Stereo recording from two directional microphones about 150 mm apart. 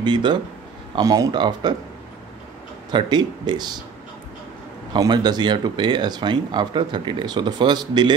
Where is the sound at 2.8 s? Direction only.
30° right (ahead or behind).